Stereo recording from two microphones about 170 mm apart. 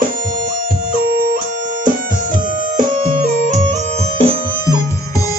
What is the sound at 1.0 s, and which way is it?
Music, 60° right (ahead or behind).